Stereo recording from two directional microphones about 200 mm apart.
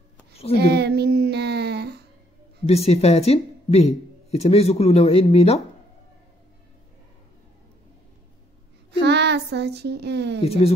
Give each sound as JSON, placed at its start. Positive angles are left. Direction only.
{"t": 0.6, "sound": "child singing", "side_deg": -55}
{"t": 2.6, "sound": "speech", "side_deg": 30}
{"t": 9.0, "sound": "child singing", "side_deg": -55}
{"t": 10.4, "sound": "speech", "side_deg": 30}